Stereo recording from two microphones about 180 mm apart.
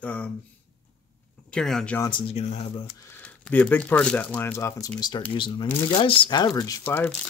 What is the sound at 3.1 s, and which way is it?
Speech, 5° left (ahead or behind).